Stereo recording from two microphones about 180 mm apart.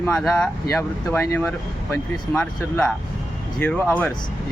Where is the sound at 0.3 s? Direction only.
15° left (ahead or behind).